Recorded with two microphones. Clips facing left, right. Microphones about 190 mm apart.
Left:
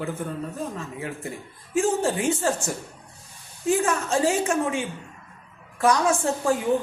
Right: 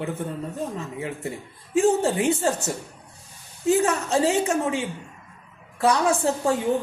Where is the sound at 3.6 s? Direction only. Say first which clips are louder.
Right 2 dB; 20° right (ahead or behind).